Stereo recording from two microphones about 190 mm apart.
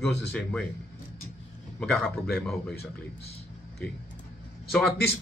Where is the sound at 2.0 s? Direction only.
55° left (ahead or behind).